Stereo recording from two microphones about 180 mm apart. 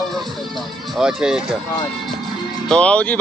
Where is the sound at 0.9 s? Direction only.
5° right (ahead or behind).